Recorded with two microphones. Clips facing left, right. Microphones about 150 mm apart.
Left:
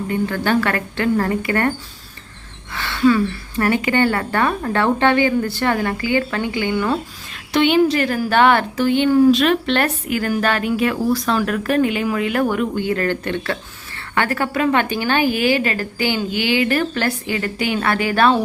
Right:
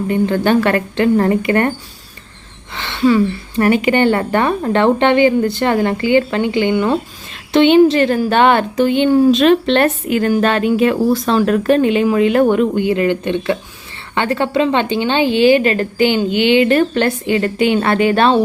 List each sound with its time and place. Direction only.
0.1 s a woman's voice: 20° right (ahead or behind)
2.7 s a woman's voice: 20° right (ahead or behind)